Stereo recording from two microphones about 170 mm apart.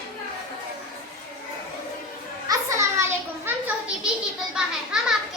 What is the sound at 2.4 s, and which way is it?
Children playing, 20° right (ahead or behind).